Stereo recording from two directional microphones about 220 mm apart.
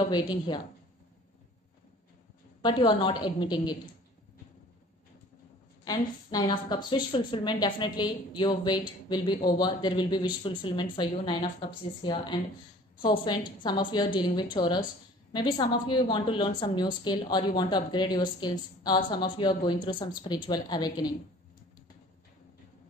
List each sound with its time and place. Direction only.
0.1 s a woman's voice: 20° left (ahead or behind)
2.6 s a woman's voice: 20° left (ahead or behind)
5.9 s a woman's voice: 15° left (ahead or behind)